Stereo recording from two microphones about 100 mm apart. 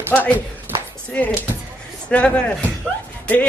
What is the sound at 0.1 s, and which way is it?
Speech, 15° left (ahead or behind).